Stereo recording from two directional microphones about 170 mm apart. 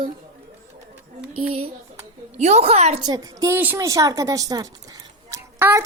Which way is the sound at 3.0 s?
20° right (ahead or behind).